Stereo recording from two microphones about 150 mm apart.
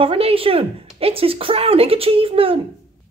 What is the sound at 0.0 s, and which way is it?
A woman's voice, 40° right (ahead or behind).